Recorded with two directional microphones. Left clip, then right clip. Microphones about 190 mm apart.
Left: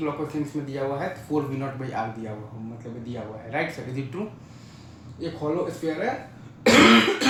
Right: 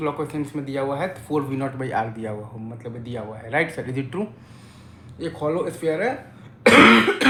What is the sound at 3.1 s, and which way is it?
Speech, 30° right (ahead or behind).